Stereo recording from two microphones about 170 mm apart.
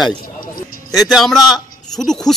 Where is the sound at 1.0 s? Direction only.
Centre (ahead or behind).